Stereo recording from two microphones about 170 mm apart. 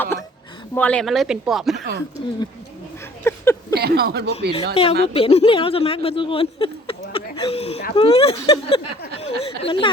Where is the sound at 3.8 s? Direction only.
65° right (ahead or behind).